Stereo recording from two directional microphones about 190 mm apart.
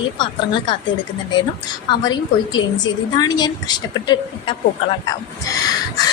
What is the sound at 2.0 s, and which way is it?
A woman's voice, 20° left (ahead or behind).